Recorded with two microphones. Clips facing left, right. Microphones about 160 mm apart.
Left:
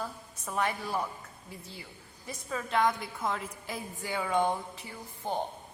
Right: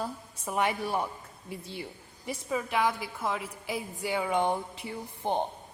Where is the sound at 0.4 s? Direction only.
15° right (ahead or behind).